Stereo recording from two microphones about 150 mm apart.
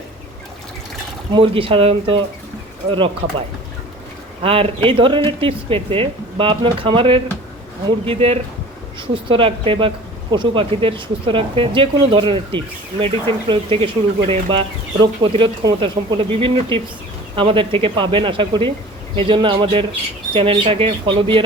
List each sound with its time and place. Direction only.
1.3 s speech: 35° right (ahead or behind)
4.4 s speech: 40° right (ahead or behind)